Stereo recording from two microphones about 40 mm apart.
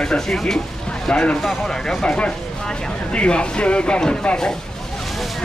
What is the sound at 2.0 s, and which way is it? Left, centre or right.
Speech, left.